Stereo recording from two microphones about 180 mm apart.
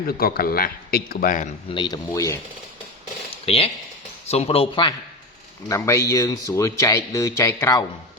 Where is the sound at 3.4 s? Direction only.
30° left (ahead or behind).